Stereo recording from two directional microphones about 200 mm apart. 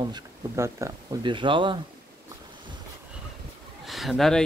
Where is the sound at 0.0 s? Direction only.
20° right (ahead or behind).